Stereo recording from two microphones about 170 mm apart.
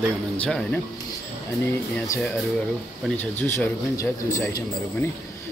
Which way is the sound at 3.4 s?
15° left (ahead or behind).